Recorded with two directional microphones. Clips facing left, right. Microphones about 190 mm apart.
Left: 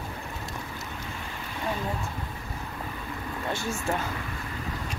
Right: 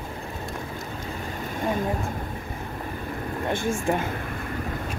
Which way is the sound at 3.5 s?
50° right (ahead or behind).